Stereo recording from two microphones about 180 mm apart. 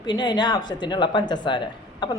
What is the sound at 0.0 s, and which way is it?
Speech, 25° left (ahead or behind).